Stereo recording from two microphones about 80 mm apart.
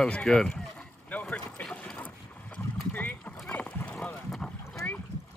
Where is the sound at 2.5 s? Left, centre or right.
Left.